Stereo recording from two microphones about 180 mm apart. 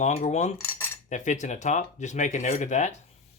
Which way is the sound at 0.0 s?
40° left (ahead or behind).